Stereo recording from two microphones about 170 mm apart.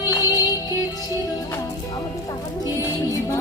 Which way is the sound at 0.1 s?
20° left (ahead or behind).